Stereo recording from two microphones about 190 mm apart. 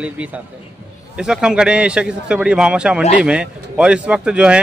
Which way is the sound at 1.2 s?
5° right (ahead or behind).